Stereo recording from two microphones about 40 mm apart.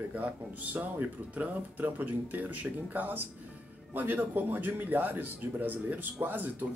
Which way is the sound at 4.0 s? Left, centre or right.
Right.